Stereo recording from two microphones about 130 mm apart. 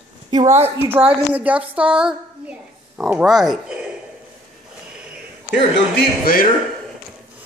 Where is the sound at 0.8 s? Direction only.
10° right (ahead or behind).